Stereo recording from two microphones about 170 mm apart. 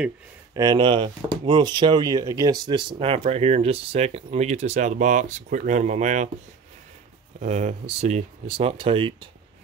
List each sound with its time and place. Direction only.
0.6 s speech: 25° right (ahead or behind); by 6.3 s 45° right (ahead or behind)
7.3 s speech: 45° right (ahead or behind)